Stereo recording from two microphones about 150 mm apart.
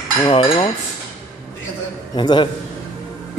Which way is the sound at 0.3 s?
35° left (ahead or behind).